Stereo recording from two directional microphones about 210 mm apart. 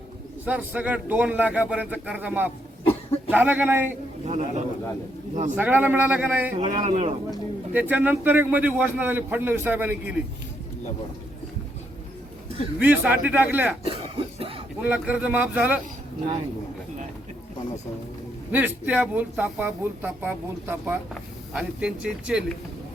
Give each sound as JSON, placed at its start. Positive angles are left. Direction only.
{"t": 0.4, "sound": "a man's voice", "side_deg": -5}
{"t": 4.3, "sound": "a man's voice", "side_deg": -35}
{"t": 5.5, "sound": "a man's voice", "side_deg": -10}
{"t": 6.6, "sound": "a man's voice", "side_deg": -30}
{"t": 7.3, "sound": "a man's voice", "side_deg": -10}
{"t": 12.8, "sound": "a man's voice", "side_deg": -10}
{"t": 13.8, "sound": "cough", "side_deg": -25}
{"t": 14.8, "sound": "a man's voice", "side_deg": -5}
{"t": 18.5, "sound": "a man's voice", "side_deg": -10}